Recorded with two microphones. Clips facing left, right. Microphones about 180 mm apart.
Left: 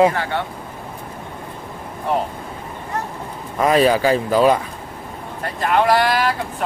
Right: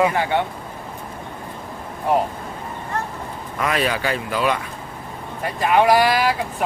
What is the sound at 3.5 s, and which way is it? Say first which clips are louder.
Speech: left 7 dB; 35° left (ahead or behind).